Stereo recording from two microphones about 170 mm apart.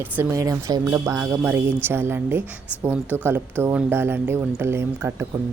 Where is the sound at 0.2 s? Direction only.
20° right (ahead or behind).